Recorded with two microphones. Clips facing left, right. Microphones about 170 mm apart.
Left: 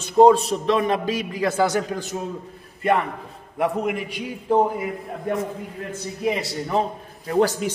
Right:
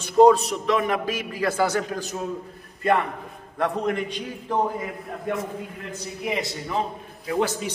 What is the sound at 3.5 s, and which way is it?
Speech, 10° left (ahead or behind).